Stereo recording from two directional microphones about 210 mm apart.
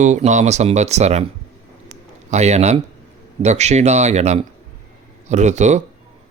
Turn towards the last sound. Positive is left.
turn(degrees=-35)  # may be behind; listen again after turning